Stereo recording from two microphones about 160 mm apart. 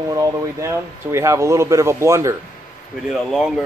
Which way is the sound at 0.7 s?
20° right (ahead or behind).